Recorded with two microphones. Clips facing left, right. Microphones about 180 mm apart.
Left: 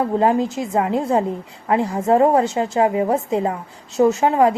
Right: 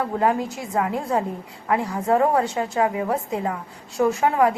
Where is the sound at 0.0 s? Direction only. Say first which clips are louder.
Left 5 dB; 25° left (ahead or behind).